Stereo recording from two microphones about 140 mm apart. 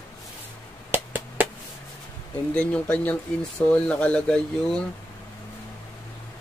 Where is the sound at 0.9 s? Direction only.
15° right (ahead or behind).